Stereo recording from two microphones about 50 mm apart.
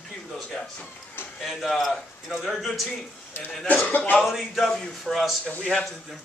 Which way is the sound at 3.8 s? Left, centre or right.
Left.